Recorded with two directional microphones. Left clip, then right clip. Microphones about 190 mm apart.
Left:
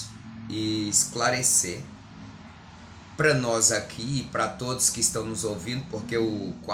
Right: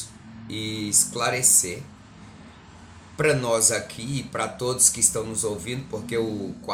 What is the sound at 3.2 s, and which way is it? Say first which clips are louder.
Speech: right 1 dB; 20° right (ahead or behind).